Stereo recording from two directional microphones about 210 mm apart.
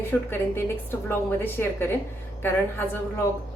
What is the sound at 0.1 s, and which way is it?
A woman's voice, 10° left (ahead or behind).